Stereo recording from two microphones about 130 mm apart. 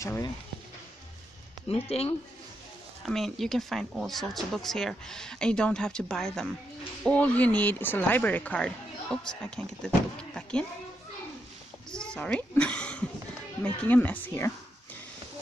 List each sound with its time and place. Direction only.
0.0 s speech: 25° left (ahead or behind)
1.7 s speech: 50° left (ahead or behind)
3.1 s speech: centre (ahead or behind)
11.9 s a sound: 5° left (ahead or behind)
13.6 s speech: 15° left (ahead or behind)